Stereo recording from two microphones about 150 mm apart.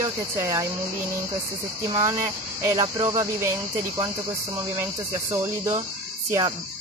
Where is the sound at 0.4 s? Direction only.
20° right (ahead or behind).